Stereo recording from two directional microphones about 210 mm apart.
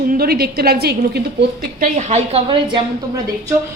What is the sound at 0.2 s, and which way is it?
Speech, 50° right (ahead or behind).